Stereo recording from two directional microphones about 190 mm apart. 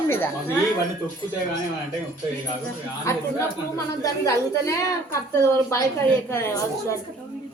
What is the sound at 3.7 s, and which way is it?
A woman's voice, 15° left (ahead or behind).